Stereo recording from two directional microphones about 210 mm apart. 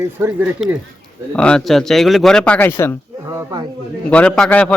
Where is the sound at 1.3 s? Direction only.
5° left (ahead or behind).